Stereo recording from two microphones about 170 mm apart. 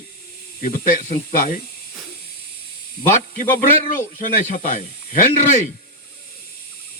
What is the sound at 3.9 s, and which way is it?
Speech, 50° left (ahead or behind).